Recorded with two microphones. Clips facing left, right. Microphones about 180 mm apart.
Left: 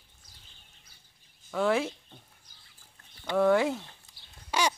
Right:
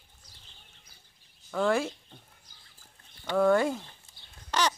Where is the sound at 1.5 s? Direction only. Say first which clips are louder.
Even; centre (ahead or behind).